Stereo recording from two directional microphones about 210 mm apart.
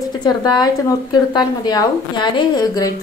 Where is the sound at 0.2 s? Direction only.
20° left (ahead or behind).